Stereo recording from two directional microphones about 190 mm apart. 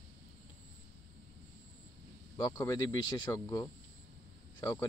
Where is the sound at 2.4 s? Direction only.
20° left (ahead or behind).